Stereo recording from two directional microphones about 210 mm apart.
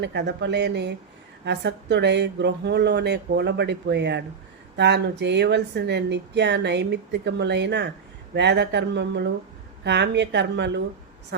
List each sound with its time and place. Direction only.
0.0 s speech: 55° right (ahead or behind)